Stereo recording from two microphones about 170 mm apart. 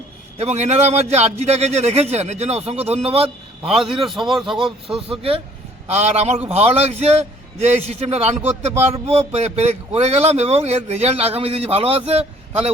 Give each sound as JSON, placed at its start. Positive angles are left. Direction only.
{"t": 0.3, "sound": "speech", "side_deg": -40}
{"t": 3.6, "sound": "speech", "side_deg": 0}
{"t": 5.0, "sound": "speech", "side_deg": -35}